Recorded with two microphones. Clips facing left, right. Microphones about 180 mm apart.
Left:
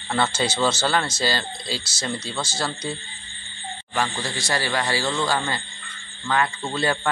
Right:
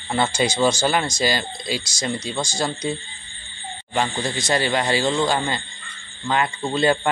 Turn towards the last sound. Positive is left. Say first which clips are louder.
# right 5 dB
turn(degrees=-20)  # may be behind; listen again after turning